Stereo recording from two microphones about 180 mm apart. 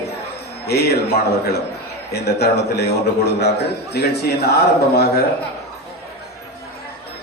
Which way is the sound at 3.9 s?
65° left (ahead or behind).